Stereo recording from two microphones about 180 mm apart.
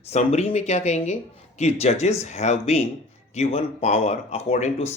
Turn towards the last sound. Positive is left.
turn(degrees=35)  # may be behind; listen again after turning